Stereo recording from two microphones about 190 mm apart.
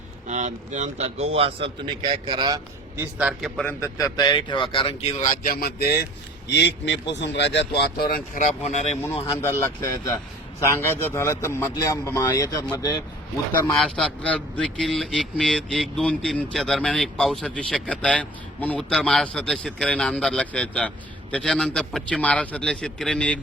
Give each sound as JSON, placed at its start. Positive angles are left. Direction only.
{"t": 0.3, "sound": "a man's voice", "side_deg": -40}
{"t": 3.0, "sound": "a man's voice", "side_deg": -5}
{"t": 3.7, "sound": "speech", "side_deg": 15}
{"t": 6.5, "sound": "speech", "side_deg": 65}
{"t": 8.4, "sound": "speech", "side_deg": 35}
{"t": 9.4, "sound": "a man's voice", "side_deg": 15}
{"t": 13.7, "sound": "a man's voice", "side_deg": 0}